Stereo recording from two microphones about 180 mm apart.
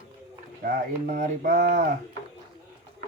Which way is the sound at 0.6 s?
50° right (ahead or behind).